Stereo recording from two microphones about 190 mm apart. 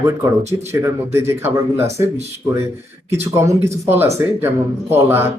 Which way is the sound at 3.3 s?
15° right (ahead or behind).